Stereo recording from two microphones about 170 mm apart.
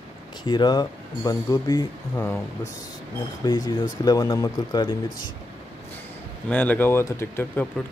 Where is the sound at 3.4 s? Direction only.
25° left (ahead or behind).